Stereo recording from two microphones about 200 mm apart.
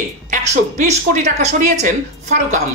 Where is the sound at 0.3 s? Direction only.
40° right (ahead or behind).